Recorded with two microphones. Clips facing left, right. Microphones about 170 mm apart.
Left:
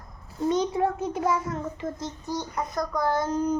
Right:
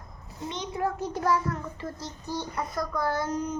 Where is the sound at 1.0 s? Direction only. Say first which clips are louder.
Left 1 dB; 20° left (ahead or behind).